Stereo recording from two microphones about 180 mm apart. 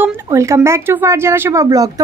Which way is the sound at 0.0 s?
15° right (ahead or behind).